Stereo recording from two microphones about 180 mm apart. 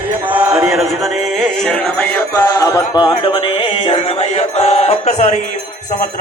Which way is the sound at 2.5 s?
15° left (ahead or behind).